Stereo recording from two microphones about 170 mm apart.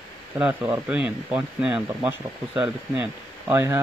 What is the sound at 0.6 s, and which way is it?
Speech, 10° right (ahead or behind).